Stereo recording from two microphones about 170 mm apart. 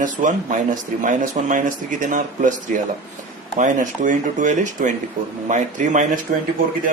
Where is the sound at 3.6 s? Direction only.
50° right (ahead or behind).